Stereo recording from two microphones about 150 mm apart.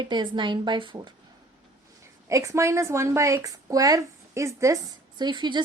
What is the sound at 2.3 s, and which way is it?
A woman's voice, 20° right (ahead or behind).